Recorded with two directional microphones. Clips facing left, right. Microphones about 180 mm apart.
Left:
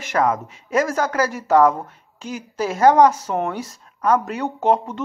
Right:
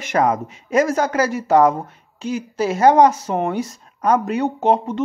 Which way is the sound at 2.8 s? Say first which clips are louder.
Even; 15° right (ahead or behind).